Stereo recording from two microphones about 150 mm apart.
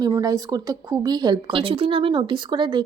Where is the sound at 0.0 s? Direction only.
25° right (ahead or behind).